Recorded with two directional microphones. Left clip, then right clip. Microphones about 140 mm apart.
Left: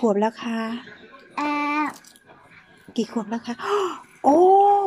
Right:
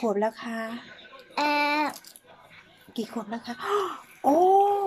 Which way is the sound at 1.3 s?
25° right (ahead or behind).